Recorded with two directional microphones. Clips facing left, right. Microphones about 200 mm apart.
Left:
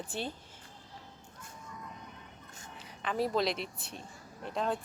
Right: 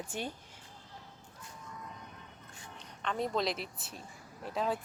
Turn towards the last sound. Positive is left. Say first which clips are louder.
# even
turn(degrees=-5)  # may be behind; listen again after turning